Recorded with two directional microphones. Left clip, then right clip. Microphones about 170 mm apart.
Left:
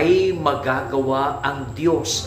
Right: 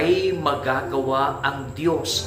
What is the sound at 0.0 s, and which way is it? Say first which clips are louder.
A man's voice: left 3 dB; 20° left (ahead or behind).